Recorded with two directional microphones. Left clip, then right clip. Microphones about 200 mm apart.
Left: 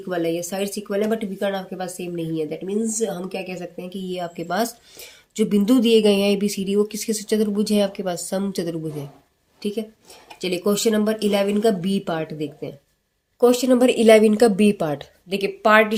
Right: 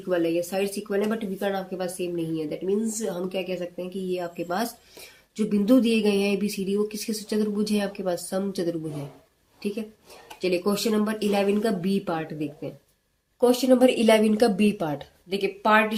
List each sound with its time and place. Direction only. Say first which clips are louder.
0.1 s a woman's voice: even; 30° left (ahead or behind)